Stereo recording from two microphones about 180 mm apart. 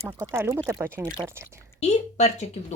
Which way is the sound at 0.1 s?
15° right (ahead or behind).